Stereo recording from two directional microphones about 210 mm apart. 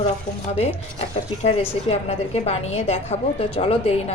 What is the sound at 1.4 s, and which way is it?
A woman's voice, 30° left (ahead or behind).